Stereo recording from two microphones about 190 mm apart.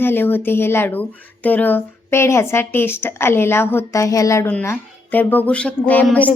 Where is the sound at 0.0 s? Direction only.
10° left (ahead or behind).